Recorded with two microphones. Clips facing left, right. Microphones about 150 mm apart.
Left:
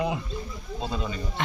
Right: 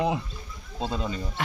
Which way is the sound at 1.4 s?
5° right (ahead or behind).